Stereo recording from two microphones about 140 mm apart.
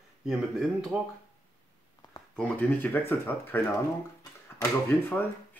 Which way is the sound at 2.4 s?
10° left (ahead or behind).